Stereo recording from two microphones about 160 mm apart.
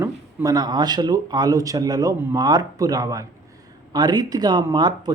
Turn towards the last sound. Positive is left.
turn(degrees=-25)  # may be behind; listen again after turning